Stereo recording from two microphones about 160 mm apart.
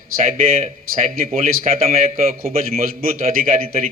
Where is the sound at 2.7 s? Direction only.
60° right (ahead or behind).